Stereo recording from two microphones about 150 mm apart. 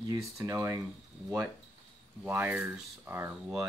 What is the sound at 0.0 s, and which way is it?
Speech, 20° right (ahead or behind).